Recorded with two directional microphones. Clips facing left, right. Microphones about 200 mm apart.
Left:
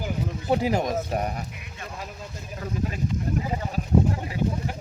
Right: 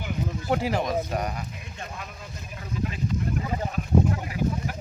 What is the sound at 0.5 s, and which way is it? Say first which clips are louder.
Speech: left 2 dB; 40° left (ahead or behind).